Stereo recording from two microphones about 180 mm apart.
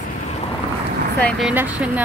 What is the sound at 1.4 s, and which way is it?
Speech, 10° right (ahead or behind).